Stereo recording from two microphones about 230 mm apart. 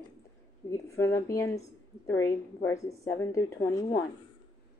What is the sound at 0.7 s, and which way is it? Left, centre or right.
A woman's voice, centre.